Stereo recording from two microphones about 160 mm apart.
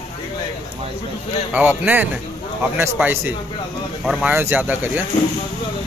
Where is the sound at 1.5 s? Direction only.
10° right (ahead or behind).